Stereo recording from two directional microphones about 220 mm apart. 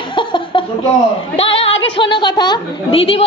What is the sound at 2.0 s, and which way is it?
A woman's voice, 20° left (ahead or behind).